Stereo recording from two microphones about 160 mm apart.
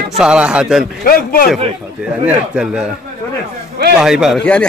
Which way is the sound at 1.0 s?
65° left (ahead or behind).